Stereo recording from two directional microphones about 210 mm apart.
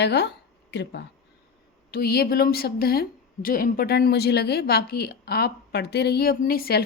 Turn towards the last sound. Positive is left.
turn(degrees=45)  # may be behind; listen again after turning